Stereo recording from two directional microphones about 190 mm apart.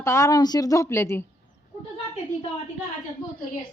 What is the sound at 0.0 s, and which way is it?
Speech, 15° left (ahead or behind).